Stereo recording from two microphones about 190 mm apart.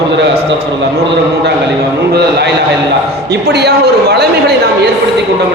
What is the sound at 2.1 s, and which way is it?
A man's voice, 60° right (ahead or behind).